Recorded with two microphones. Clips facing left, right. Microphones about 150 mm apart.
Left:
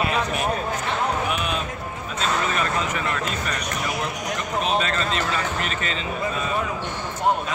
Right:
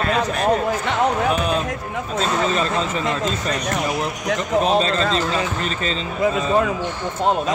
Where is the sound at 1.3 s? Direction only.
35° right (ahead or behind).